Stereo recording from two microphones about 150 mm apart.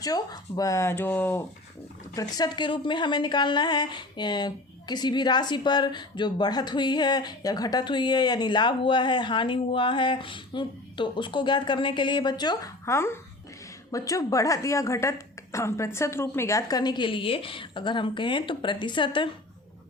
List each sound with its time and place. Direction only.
0.0 s speech: 25° left (ahead or behind)
2.1 s a woman's voice: 25° left (ahead or behind)